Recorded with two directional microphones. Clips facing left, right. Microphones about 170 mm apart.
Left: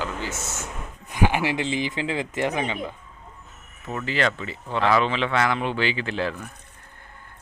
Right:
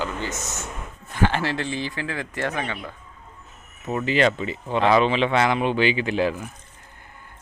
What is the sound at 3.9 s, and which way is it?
Speech, 20° right (ahead or behind).